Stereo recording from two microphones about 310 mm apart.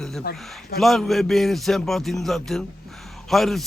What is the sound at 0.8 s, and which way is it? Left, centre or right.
A man's voice, centre.